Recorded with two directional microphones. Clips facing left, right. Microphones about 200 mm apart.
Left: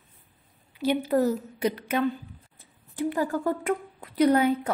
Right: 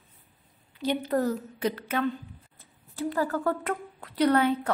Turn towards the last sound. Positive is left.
turn(degrees=10)  # may be behind; listen again after turning